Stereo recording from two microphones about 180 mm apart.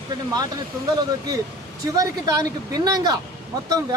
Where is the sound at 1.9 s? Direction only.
20° right (ahead or behind).